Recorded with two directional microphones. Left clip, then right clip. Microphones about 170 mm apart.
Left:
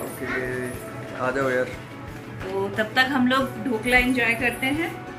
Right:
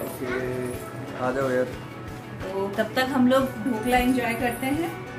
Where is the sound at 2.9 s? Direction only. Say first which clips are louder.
Left 3 dB; 10° right (ahead or behind).